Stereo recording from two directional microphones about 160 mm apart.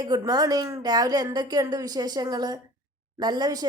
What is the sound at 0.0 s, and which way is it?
A woman's voice, 25° right (ahead or behind).